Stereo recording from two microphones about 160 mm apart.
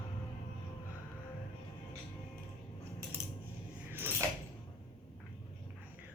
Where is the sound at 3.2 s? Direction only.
20° left (ahead or behind).